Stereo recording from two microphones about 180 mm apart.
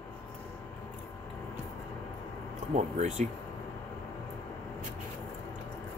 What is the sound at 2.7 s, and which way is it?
Speech, 40° right (ahead or behind).